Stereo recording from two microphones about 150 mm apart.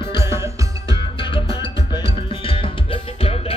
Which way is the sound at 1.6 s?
35° left (ahead or behind).